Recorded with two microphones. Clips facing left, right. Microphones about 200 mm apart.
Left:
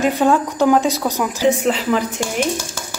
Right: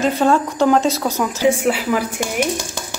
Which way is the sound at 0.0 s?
15° left (ahead or behind).